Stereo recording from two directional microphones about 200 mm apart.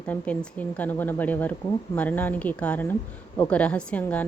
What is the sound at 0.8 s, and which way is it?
A woman's voice, 10° left (ahead or behind).